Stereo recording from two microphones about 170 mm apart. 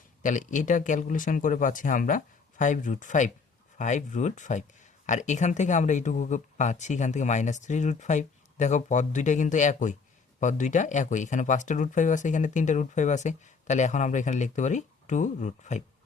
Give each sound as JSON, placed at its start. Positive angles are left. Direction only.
{"t": 0.2, "sound": "speech", "side_deg": 50}